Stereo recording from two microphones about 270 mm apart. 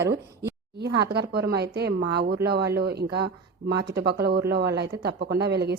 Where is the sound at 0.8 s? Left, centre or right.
Right.